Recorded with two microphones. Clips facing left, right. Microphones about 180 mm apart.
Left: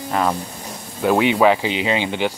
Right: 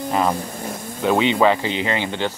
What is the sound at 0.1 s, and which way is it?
Speech, centre (ahead or behind).